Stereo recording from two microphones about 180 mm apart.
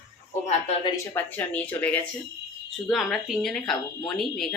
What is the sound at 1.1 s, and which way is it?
A woman's voice, 10° left (ahead or behind).